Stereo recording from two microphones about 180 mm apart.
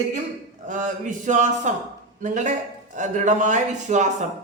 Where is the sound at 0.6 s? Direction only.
45° right (ahead or behind).